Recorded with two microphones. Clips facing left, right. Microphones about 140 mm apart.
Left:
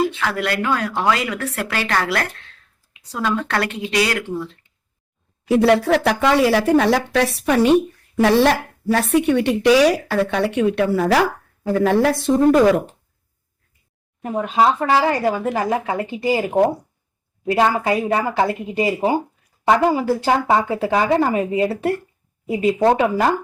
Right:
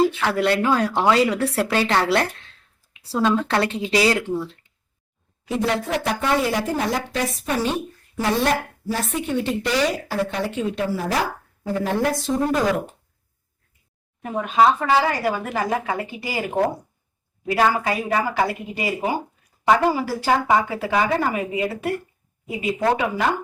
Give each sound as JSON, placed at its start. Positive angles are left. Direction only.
{"t": 0.0, "sound": "speech", "side_deg": -30}
{"t": 5.5, "sound": "speech", "side_deg": 70}
{"t": 14.3, "sound": "speech", "side_deg": 30}